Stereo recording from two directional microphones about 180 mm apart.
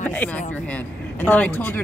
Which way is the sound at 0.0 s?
10° left (ahead or behind).